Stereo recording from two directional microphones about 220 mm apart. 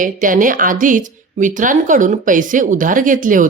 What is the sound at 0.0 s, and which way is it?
Speech, 35° right (ahead or behind).